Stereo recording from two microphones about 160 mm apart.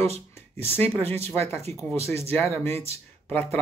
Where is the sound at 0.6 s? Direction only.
10° left (ahead or behind).